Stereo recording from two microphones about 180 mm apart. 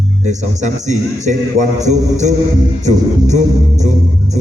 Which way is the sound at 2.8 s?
40° right (ahead or behind).